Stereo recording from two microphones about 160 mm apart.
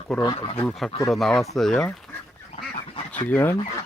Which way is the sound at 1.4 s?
Centre (ahead or behind).